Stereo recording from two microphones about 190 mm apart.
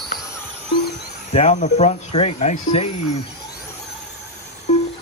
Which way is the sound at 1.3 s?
35° left (ahead or behind).